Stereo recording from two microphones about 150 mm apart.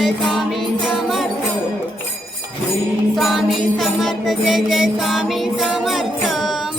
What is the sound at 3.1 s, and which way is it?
Music, centre (ahead or behind).